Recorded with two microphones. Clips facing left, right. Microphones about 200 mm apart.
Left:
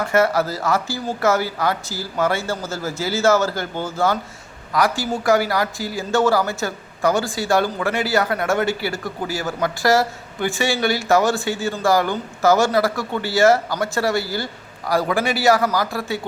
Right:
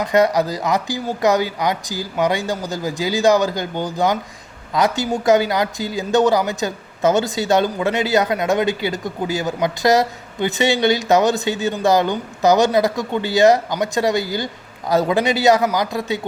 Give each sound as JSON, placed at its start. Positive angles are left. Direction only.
{"t": 0.0, "sound": "a man's voice", "side_deg": -15}